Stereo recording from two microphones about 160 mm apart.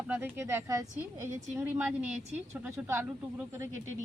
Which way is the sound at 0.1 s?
15° right (ahead or behind).